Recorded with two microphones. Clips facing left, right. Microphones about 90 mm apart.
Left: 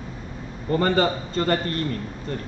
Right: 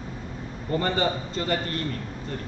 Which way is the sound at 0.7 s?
50° left (ahead or behind).